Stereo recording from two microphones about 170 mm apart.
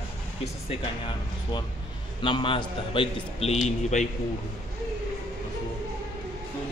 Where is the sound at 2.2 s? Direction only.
30° left (ahead or behind).